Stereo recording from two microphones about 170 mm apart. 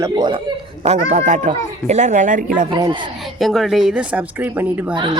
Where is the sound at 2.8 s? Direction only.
25° right (ahead or behind).